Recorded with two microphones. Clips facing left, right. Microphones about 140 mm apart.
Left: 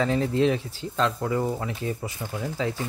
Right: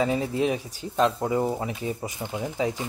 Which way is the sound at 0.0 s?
15° right (ahead or behind).